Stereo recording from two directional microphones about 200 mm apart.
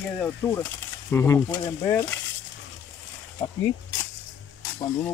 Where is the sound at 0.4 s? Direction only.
20° left (ahead or behind).